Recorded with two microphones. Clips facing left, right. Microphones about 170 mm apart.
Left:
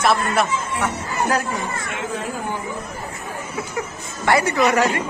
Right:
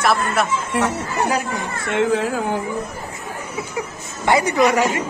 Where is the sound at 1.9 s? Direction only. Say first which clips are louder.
Right 13 dB; 90° right.